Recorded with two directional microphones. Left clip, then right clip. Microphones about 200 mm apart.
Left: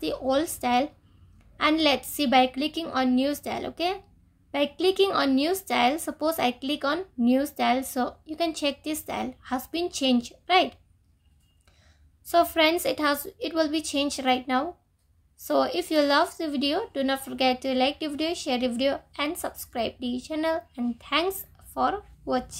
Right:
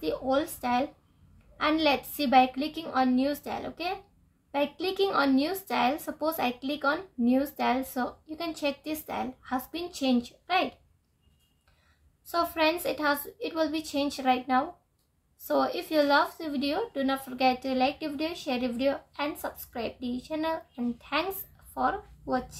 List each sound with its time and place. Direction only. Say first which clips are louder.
0.0 s a woman's voice: left 2 dB; 35° left (ahead or behind)
12.3 s a woman's voice: left 5 dB; 40° left (ahead or behind)